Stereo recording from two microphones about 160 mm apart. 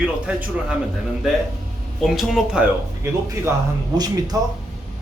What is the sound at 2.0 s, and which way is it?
Speech, centre (ahead or behind).